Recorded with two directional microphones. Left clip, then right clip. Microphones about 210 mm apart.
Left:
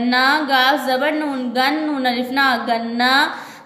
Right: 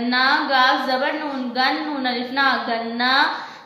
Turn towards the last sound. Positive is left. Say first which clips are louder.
# left 2 dB
turn(degrees=50)  # may be behind; listen again after turning